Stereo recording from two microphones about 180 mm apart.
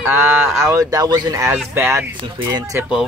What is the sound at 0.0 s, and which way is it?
Speech, 10° right (ahead or behind).